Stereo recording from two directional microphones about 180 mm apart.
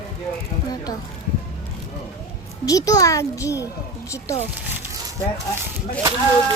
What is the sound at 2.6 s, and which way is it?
A child's voice, 20° left (ahead or behind).